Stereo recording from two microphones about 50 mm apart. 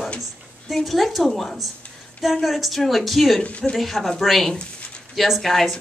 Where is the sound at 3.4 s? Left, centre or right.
Left.